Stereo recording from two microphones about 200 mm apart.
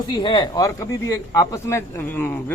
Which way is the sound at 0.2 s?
20° left (ahead or behind).